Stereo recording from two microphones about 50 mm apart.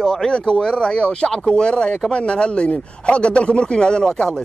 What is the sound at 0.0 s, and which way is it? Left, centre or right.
A man's voice, centre.